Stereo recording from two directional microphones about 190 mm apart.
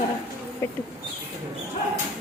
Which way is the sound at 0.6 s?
10° left (ahead or behind).